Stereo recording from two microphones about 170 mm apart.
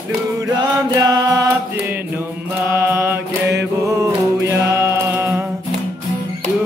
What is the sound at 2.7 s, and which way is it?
Mantra, 15° right (ahead or behind).